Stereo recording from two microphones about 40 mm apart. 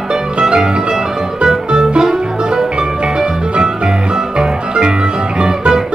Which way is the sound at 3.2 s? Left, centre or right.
Centre.